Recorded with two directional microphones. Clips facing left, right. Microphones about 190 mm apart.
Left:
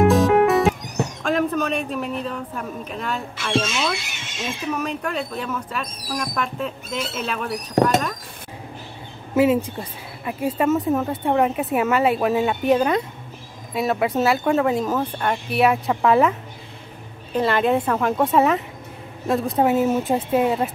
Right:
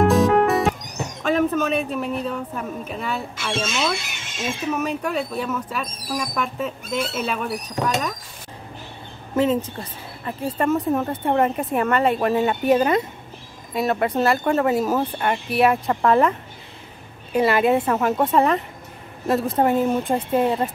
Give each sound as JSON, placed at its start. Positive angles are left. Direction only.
{"t": 0.1, "sound": "music", "side_deg": 0}
{"t": 1.2, "sound": "a woman's voice", "side_deg": -5}
{"t": 7.8, "sound": "speech", "side_deg": 60}
{"t": 9.3, "sound": "speech", "side_deg": 10}
{"t": 17.3, "sound": "speech", "side_deg": -10}